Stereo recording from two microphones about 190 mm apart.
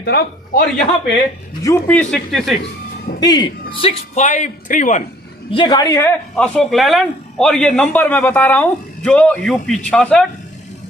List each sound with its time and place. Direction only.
0.0 s a man's voice: 50° left (ahead or behind)
1.6 s a man's voice: 10° left (ahead or behind)
3.2 s a man's voice: 20° left (ahead or behind); by 5.0 s 40° left (ahead or behind)
5.5 s a woman's voice: 20° left (ahead or behind)
6.3 s a man's voice: 5° left (ahead or behind)